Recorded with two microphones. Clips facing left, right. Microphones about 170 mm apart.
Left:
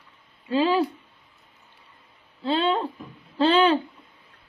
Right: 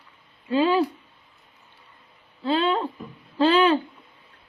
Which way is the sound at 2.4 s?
30° left (ahead or behind).